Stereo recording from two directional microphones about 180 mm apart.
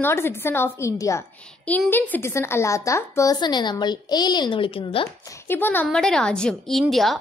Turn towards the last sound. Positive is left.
turn(degrees=0)  # may be behind; listen again after turning